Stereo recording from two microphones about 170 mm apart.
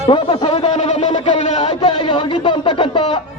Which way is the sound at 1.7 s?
25° left (ahead or behind).